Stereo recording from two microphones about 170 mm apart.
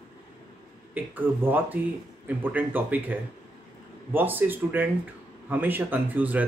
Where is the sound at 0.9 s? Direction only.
10° right (ahead or behind).